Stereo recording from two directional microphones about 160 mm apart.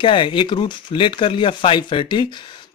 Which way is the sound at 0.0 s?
30° left (ahead or behind).